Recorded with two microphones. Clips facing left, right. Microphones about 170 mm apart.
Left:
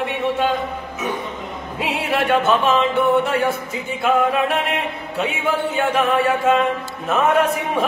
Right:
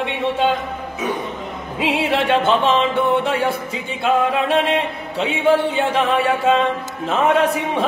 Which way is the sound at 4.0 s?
30° right (ahead or behind).